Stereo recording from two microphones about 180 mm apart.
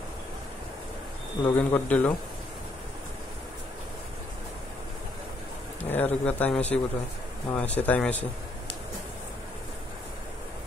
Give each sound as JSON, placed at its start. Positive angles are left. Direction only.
{"t": 1.4, "sound": "speech", "side_deg": 10}
{"t": 5.8, "sound": "speech", "side_deg": 10}